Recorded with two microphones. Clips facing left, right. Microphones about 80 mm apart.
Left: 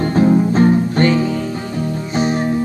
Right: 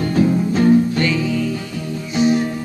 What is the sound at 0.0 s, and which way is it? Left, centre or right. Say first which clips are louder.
Music: left 3 dB; left.